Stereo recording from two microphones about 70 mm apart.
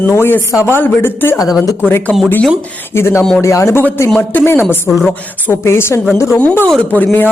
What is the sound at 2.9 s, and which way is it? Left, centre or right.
Speech, left.